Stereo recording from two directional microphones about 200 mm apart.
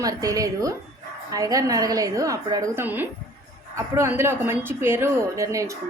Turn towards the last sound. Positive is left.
turn(degrees=-15)  # may be behind; listen again after turning